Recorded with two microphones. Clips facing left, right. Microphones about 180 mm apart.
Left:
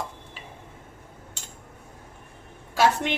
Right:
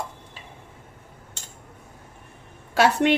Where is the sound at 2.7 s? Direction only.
70° right (ahead or behind).